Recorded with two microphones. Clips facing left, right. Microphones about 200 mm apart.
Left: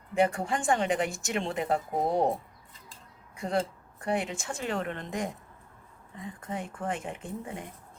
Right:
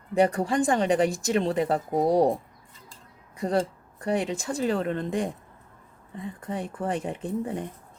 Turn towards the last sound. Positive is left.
turn(degrees=-35)  # may be behind; listen again after turning